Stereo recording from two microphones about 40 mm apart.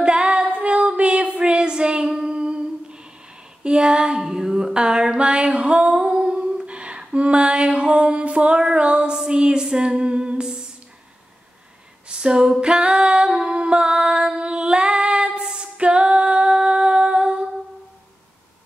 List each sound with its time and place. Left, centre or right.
0.0 s female singing: right
1.4 s a sound: right
2.0 s humming: right
3.6 s female singing: right
9.1 s a sound: centre
9.4 s female singing: right
12.1 s female singing: centre